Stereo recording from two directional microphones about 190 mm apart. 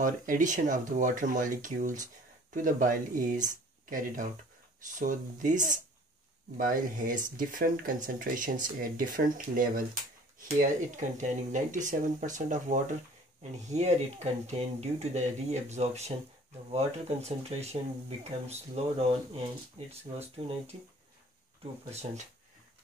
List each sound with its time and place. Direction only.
0.0 s speech: 40° right (ahead or behind)
11.0 s speech: 40° right (ahead or behind)
21.9 s speech: 40° right (ahead or behind)